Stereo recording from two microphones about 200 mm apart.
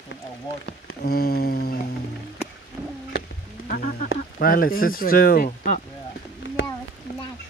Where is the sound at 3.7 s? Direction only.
40° left (ahead or behind).